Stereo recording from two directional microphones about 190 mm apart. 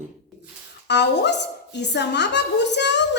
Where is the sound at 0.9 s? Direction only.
65° left (ahead or behind).